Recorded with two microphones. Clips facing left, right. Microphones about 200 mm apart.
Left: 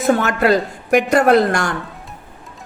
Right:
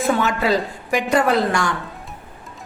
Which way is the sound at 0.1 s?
55° left (ahead or behind).